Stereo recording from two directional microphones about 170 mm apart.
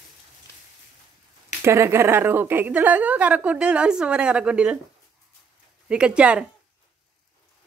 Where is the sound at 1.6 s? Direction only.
15° right (ahead or behind).